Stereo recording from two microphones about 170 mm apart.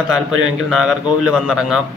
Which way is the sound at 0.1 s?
Centre (ahead or behind).